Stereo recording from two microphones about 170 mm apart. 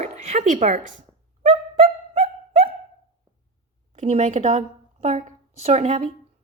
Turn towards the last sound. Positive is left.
turn(degrees=-45)  # may be behind; listen again after turning